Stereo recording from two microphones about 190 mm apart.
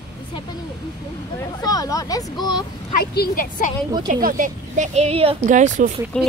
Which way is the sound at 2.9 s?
55° left (ahead or behind).